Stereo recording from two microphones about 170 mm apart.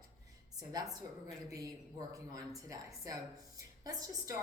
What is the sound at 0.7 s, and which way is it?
A woman's voice, 20° right (ahead or behind).